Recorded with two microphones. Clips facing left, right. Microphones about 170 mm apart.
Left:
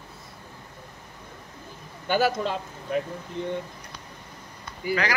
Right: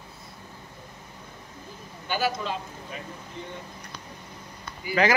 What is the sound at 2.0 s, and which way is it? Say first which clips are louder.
Speech: left 4 dB; 55° left (ahead or behind).